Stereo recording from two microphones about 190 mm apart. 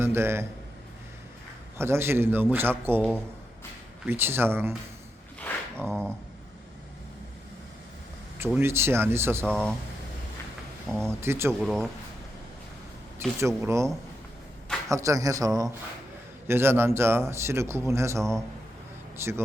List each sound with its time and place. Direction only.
0.0 s a man's voice: 15° right (ahead or behind)
1.8 s a man's voice: 15° right (ahead or behind)
4.0 s a man's voice: 10° right (ahead or behind)
5.4 s a sound: 5° left (ahead or behind)
8.4 s a man's voice: 10° right (ahead or behind)
9.5 s speech: 5° left (ahead or behind)
10.8 s a man's voice: 10° right (ahead or behind)
11.6 s speech: centre (ahead or behind)
13.6 s a man's voice: 15° right (ahead or behind)